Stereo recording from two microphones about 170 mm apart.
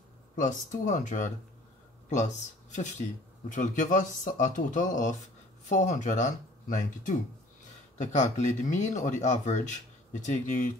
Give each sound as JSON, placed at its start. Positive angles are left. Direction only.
{"t": 0.4, "sound": "speech", "side_deg": 50}